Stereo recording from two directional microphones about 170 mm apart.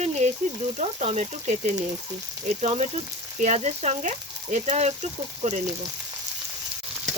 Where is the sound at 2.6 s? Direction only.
40° right (ahead or behind).